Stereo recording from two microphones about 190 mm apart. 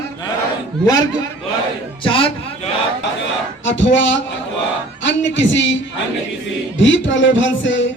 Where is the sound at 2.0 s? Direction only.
25° left (ahead or behind).